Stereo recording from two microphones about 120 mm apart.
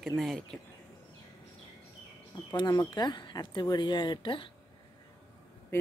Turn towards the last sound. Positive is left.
turn(degrees=20)  # may be behind; listen again after turning